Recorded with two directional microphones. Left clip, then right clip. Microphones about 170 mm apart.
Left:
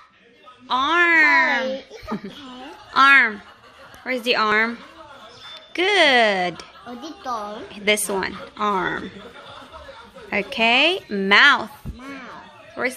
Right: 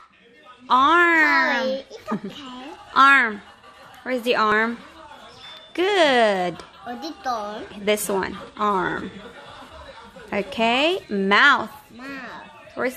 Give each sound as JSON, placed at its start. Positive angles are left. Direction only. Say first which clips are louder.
{"t": 0.7, "sound": "a sound", "louder": "right 2 dB", "side_deg": -25}
{"t": 2.9, "sound": "a woman's voice", "louder": "left 1 dB", "side_deg": -15}
{"t": 7.2, "sound": "a woman's voice", "louder": "right 1 dB", "side_deg": 5}
{"t": 7.7, "sound": "a woman's voice", "louder": "left 2 dB", "side_deg": -10}
{"t": 10.3, "sound": "a woman's voice", "louder": "left 3 dB", "side_deg": -10}
{"t": 12.0, "sound": "a sound", "louder": "right 2 dB", "side_deg": 5}
{"t": 12.8, "sound": "a woman's voice", "louder": "left 1 dB", "side_deg": -10}